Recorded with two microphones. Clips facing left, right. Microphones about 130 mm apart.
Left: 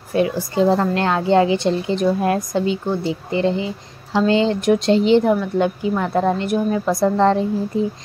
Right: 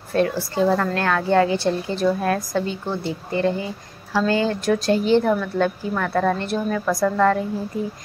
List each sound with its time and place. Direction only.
0.1 s speech: 15° left (ahead or behind)